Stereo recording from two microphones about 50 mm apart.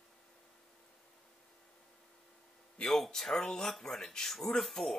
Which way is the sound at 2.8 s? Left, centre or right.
Centre.